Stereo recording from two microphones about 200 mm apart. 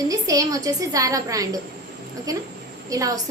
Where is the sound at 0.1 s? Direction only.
15° right (ahead or behind).